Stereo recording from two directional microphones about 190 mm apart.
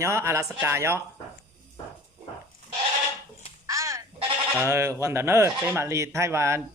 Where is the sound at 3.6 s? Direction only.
15° right (ahead or behind).